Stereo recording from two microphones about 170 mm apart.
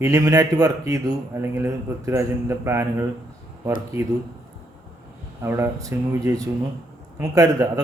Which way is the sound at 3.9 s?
15° right (ahead or behind).